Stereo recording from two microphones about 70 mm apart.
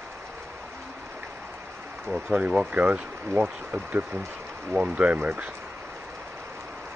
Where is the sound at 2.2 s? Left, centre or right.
Centre.